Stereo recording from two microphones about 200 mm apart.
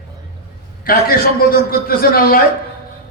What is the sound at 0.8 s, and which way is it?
A man's voice, 45° left (ahead or behind).